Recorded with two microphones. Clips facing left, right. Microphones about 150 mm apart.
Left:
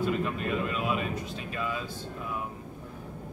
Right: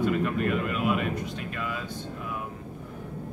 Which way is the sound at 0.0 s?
20° left (ahead or behind).